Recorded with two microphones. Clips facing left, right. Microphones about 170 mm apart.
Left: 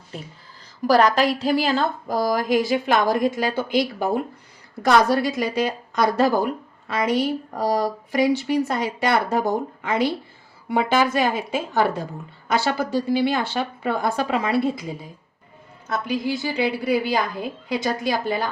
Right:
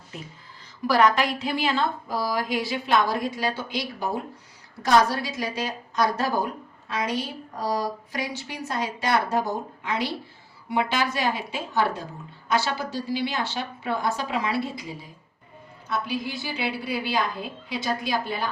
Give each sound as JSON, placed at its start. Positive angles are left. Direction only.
{"t": 0.9, "sound": "a woman's voice", "side_deg": 35}